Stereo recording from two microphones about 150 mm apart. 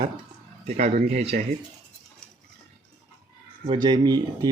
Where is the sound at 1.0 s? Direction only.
45° right (ahead or behind).